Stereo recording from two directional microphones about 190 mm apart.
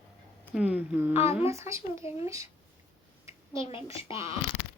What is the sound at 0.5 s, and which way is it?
Speech, 5° right (ahead or behind).